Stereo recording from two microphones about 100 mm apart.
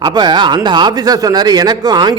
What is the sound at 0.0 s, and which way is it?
Speech, 45° right (ahead or behind).